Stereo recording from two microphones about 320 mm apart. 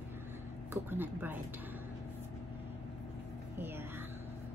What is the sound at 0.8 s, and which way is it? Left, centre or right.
Speech, centre.